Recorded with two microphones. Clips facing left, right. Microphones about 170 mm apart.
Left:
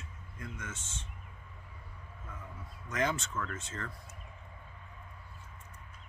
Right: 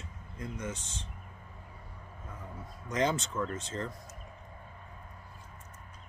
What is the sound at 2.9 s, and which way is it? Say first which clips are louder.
Speech: right 3 dB; 30° right (ahead or behind).